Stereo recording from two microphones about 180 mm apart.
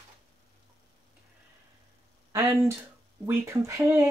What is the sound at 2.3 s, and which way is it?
Speech, 15° right (ahead or behind).